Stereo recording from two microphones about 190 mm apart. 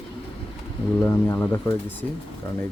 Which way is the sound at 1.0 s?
10° left (ahead or behind).